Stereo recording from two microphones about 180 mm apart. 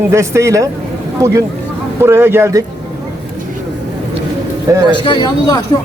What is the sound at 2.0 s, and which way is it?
Speech, 15° right (ahead or behind).